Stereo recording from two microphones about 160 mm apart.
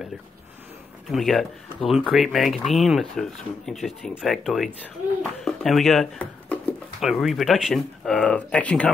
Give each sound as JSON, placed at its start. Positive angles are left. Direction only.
{"t": 1.1, "sound": "speech", "side_deg": 0}